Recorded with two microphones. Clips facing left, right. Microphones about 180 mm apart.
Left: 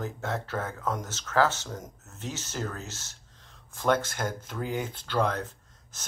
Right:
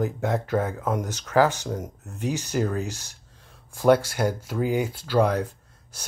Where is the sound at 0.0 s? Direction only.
15° right (ahead or behind).